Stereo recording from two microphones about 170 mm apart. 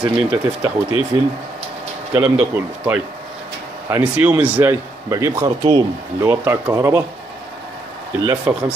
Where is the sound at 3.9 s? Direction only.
10° right (ahead or behind).